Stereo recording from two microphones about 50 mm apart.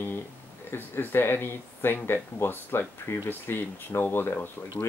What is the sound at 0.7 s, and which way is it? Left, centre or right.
Speech, left.